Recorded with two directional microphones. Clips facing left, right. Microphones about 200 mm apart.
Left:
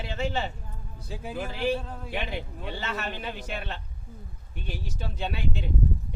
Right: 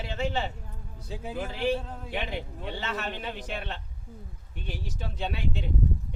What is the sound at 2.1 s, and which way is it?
Speech, centre (ahead or behind).